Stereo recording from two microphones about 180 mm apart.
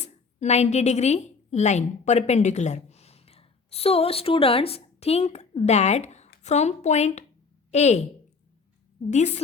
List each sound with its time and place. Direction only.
0.3 s a woman's voice: 40° left (ahead or behind)
9.0 s a woman's voice: 40° left (ahead or behind)